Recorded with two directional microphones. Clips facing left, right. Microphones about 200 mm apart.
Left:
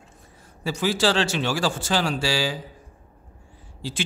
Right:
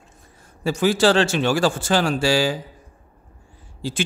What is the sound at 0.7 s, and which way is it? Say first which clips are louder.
Speech: right 5 dB; 50° right (ahead or behind).